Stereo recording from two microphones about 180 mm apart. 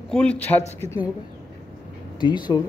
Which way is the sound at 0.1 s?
5° left (ahead or behind).